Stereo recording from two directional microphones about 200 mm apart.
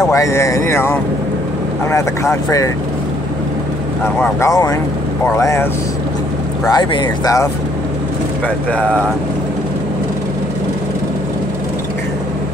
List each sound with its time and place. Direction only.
0.0 s speech: 15° left (ahead or behind)
4.2 s speech: 15° left (ahead or behind)
6.7 s speech: 20° left (ahead or behind)